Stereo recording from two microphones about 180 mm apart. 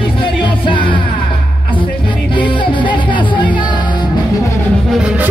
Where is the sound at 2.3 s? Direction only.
25° left (ahead or behind).